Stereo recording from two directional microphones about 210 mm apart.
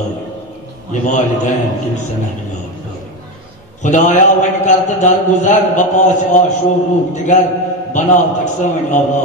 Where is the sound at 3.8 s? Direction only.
35° left (ahead or behind).